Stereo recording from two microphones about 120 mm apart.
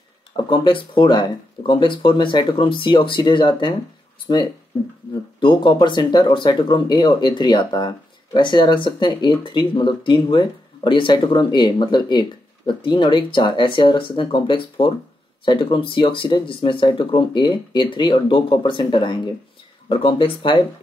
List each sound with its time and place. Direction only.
0.4 s speech: 45° left (ahead or behind)
5.4 s speech: 40° left (ahead or behind)